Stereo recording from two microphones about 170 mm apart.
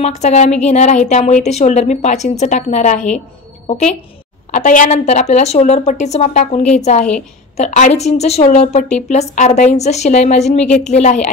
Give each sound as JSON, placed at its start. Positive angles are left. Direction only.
{"t": 0.0, "sound": "a woman's voice", "side_deg": 40}
{"t": 10.6, "sound": "a woman's voice", "side_deg": 5}
{"t": 10.9, "sound": "a woman's voice", "side_deg": 40}